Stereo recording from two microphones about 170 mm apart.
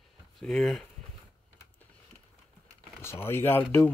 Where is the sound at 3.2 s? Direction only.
15° left (ahead or behind).